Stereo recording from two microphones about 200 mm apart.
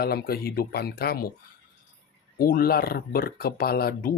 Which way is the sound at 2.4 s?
45° left (ahead or behind).